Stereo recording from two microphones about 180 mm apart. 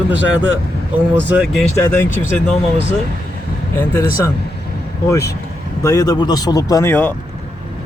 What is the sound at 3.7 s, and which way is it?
Speech, 15° left (ahead or behind).